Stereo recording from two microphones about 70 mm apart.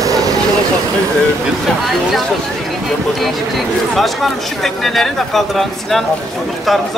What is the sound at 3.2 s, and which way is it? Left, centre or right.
Speech, centre.